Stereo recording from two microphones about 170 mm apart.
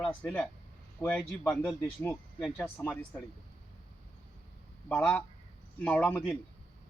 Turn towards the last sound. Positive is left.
turn(degrees=5)  # may be behind; listen again after turning